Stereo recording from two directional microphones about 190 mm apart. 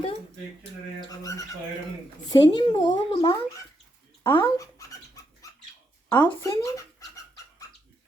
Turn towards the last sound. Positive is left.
turn(degrees=15)  # may be behind; listen again after turning